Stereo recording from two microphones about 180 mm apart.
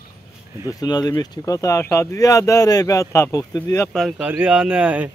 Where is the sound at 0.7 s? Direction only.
20° left (ahead or behind).